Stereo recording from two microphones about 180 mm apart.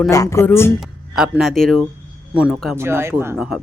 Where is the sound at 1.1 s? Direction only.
5° right (ahead or behind).